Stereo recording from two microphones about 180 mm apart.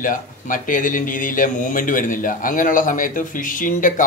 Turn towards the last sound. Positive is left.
turn(degrees=50)  # may be behind; listen again after turning